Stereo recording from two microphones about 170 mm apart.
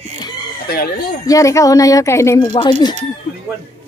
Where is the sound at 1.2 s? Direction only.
20° left (ahead or behind).